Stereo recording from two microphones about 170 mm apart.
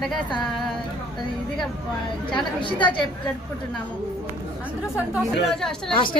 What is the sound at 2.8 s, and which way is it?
Speech, 25° left (ahead or behind).